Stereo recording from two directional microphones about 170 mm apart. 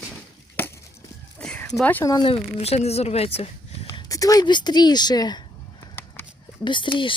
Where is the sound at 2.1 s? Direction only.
30° left (ahead or behind).